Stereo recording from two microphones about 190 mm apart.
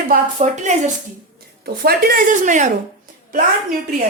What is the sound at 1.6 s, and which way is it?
Speech, 55° right (ahead or behind).